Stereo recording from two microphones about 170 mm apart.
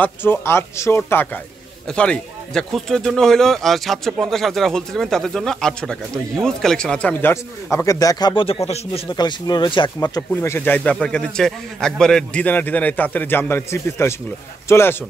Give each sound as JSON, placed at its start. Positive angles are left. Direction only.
{"t": 0.0, "sound": "a man's voice", "side_deg": 10}